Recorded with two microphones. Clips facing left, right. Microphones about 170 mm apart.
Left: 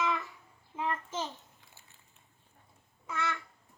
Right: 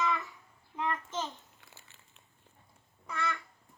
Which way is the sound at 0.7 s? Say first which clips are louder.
Even; 5° left (ahead or behind).